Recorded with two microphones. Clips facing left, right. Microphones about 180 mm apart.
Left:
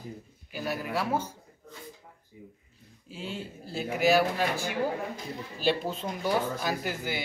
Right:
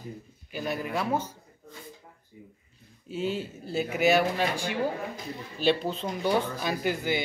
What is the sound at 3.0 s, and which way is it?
Speech, centre (ahead or behind).